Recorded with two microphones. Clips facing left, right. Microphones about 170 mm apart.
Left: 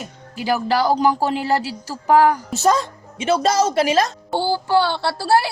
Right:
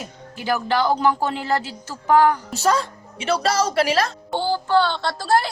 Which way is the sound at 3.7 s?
20° left (ahead or behind).